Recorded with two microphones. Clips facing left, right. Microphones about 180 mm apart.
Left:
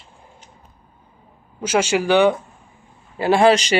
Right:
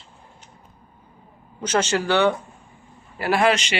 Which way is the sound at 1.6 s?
10° left (ahead or behind).